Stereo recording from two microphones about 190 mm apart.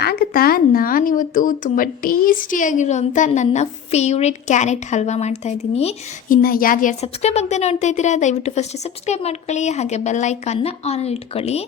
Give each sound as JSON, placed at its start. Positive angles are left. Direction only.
{"t": 0.0, "sound": "speech", "side_deg": 55}
{"t": 7.0, "sound": "a woman's voice", "side_deg": 35}